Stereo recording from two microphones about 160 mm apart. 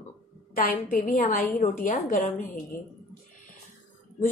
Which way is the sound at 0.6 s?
65° left (ahead or behind).